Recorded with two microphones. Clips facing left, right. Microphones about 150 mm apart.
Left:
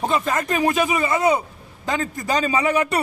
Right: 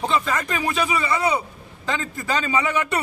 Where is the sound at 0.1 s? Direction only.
45° left (ahead or behind).